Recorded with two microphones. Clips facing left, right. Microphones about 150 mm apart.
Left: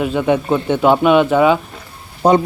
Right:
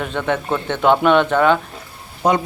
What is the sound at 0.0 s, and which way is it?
Speech, 10° left (ahead or behind).